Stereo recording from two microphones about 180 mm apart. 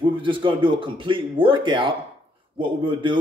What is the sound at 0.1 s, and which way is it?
Speech, 25° right (ahead or behind).